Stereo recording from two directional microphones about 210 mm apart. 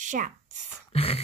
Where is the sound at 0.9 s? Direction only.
30° left (ahead or behind).